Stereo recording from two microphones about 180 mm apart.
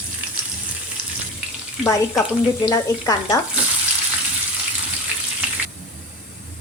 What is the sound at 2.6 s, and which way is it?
Speech, 20° left (ahead or behind).